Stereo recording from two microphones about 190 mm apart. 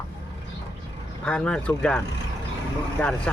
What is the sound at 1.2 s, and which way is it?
Speech, 5° left (ahead or behind).